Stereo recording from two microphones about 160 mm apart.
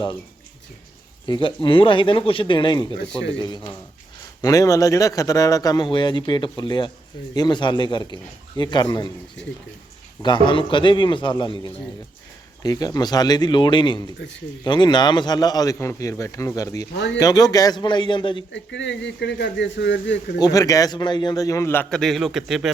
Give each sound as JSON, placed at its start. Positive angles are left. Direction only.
{"t": 1.3, "sound": "speech", "side_deg": 30}
{"t": 10.2, "sound": "speech", "side_deg": 30}
{"t": 12.6, "sound": "speech", "side_deg": 20}
{"t": 14.2, "sound": "speech", "side_deg": 90}
{"t": 14.6, "sound": "speech", "side_deg": 30}
{"t": 18.7, "sound": "speech", "side_deg": 90}
{"t": 20.4, "sound": "speech", "side_deg": 20}